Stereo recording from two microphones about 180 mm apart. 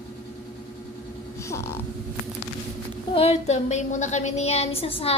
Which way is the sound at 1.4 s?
15° left (ahead or behind).